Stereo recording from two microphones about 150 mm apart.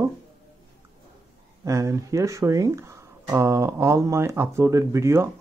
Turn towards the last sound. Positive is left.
turn(degrees=-20)  # may be behind; listen again after turning